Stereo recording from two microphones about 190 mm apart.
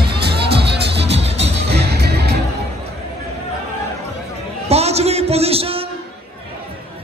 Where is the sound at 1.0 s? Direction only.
35° right (ahead or behind).